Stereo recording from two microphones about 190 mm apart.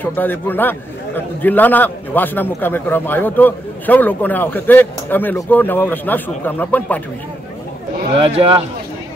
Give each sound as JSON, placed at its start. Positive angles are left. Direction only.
{"t": 0.0, "sound": "a man's voice", "side_deg": 10}
{"t": 8.2, "sound": "speech", "side_deg": -30}